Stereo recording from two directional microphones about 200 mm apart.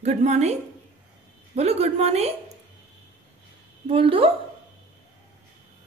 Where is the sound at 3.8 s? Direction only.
30° right (ahead or behind).